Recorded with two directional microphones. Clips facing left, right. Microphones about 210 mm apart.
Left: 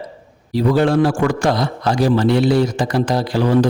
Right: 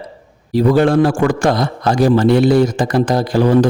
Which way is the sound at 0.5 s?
50° right (ahead or behind).